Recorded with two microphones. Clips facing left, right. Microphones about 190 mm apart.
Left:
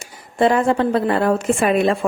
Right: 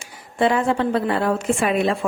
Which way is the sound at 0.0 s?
40° left (ahead or behind).